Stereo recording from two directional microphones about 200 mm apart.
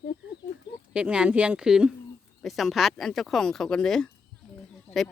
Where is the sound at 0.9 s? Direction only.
5° right (ahead or behind).